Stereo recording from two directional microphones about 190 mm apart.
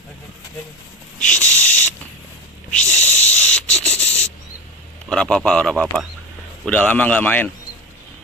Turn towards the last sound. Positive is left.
turn(degrees=10)  # may be behind; listen again after turning